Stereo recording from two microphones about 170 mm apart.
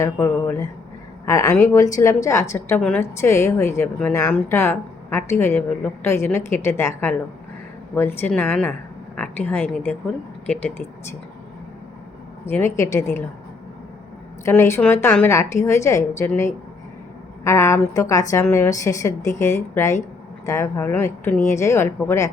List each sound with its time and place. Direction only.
0.0 s a woman's voice: 15° left (ahead or behind)
12.5 s a woman's voice: 15° left (ahead or behind)
14.4 s a woman's voice: 15° left (ahead or behind)